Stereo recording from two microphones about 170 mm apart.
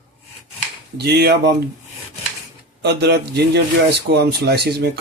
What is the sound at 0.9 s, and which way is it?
Speech, 70° right (ahead or behind).